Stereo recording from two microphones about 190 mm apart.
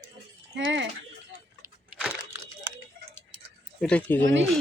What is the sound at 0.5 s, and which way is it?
Speech, 75° right (ahead or behind).